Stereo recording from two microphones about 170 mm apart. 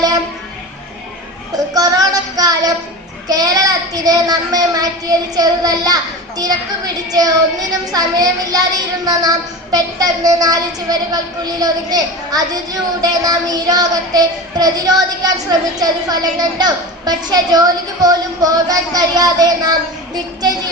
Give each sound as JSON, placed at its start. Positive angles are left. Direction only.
{"t": 1.7, "sound": "music", "side_deg": -20}
{"t": 3.2, "sound": "child singing", "side_deg": -20}